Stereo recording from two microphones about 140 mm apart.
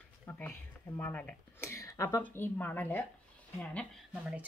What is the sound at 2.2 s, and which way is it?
Speech, 15° left (ahead or behind).